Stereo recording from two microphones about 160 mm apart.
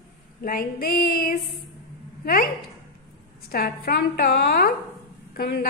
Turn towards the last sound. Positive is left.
turn(degrees=80)